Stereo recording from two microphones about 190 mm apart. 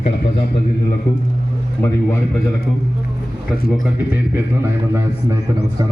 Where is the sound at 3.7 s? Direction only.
10° right (ahead or behind).